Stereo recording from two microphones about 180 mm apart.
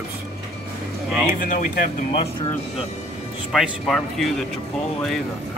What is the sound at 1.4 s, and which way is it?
Speech, 50° left (ahead or behind).